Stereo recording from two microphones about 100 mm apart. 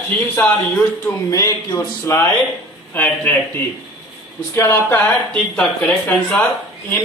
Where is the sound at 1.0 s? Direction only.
30° left (ahead or behind).